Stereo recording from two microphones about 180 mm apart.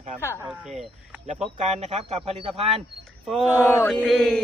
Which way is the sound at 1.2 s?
40° right (ahead or behind).